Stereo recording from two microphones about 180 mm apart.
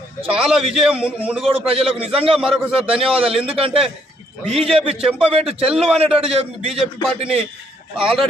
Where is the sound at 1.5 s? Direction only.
30° right (ahead or behind).